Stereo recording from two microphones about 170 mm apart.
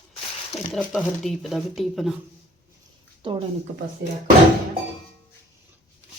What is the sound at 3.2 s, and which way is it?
Speech, 30° right (ahead or behind).